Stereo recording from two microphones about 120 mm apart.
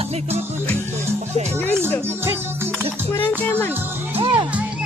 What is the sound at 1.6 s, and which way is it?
Music, 15° left (ahead or behind).